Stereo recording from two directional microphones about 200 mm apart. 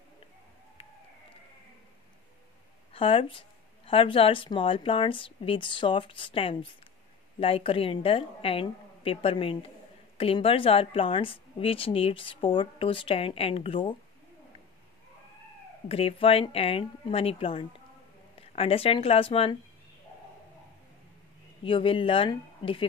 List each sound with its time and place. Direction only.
2.9 s speech: 25° left (ahead or behind)
15.9 s speech: 30° left (ahead or behind)
21.6 s speech: 25° left (ahead or behind)